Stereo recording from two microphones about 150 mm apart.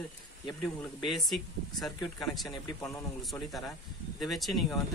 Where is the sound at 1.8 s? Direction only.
Centre (ahead or behind).